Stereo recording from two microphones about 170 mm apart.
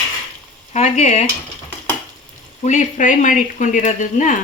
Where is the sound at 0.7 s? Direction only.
45° left (ahead or behind).